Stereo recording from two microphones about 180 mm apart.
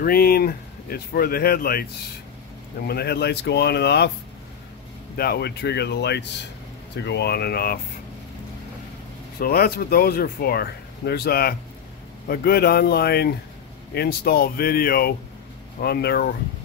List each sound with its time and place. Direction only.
0.0 s speech: 55° left (ahead or behind)
2.9 s speech: 65° left (ahead or behind)
5.1 s speech: 60° left (ahead or behind)
9.4 s speech: 60° left (ahead or behind)